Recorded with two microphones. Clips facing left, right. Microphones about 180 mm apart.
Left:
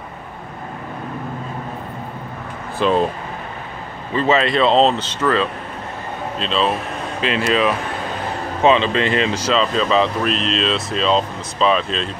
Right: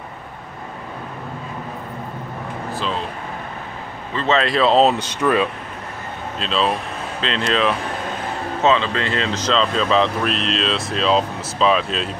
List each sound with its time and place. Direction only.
2.8 s speech: 60° left (ahead or behind)
4.1 s speech: 15° left (ahead or behind)
4.4 s speech: centre (ahead or behind)
6.4 s speech: centre (ahead or behind)
8.6 s speech: 20° left (ahead or behind); by 12.1 s 5° right (ahead or behind)